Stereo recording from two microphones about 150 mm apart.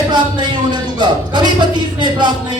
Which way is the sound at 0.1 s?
30° right (ahead or behind).